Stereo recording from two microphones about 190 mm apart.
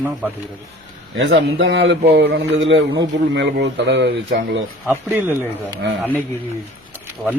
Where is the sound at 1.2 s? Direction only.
70° right (ahead or behind).